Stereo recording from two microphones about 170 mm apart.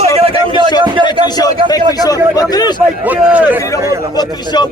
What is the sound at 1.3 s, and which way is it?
A man's voice, 20° left (ahead or behind).